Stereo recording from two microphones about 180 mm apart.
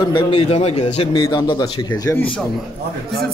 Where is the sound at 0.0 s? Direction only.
25° left (ahead or behind).